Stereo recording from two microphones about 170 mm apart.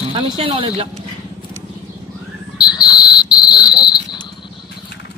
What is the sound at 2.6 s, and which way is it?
Cricket, 25° left (ahead or behind).